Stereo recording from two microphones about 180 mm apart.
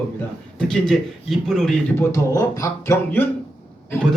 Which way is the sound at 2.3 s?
15° left (ahead or behind).